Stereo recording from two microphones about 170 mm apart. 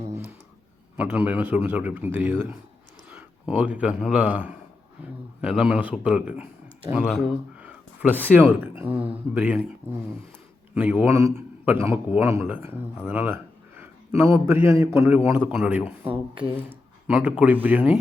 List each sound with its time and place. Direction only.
0.9 s a man's voice: 10° right (ahead or behind)
10.8 s a man's voice: 10° right (ahead or behind)
13.1 s a sound: 10° right (ahead or behind)
14.4 s a man's voice: 15° right (ahead or behind)